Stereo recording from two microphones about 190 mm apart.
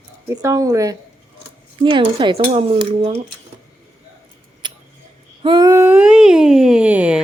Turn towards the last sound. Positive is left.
turn(degrees=-5)  # may be behind; listen again after turning